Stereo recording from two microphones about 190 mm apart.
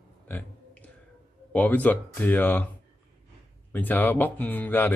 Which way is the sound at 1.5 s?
10° left (ahead or behind).